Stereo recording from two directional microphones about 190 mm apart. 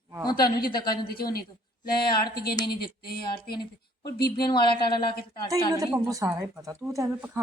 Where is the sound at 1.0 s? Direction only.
55° left (ahead or behind).